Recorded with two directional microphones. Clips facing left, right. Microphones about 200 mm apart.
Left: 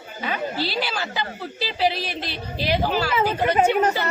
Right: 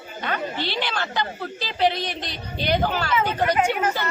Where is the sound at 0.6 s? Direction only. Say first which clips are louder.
Left 1 dB; 5° left (ahead or behind).